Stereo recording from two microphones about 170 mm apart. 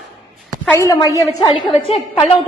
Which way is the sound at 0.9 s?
20° left (ahead or behind).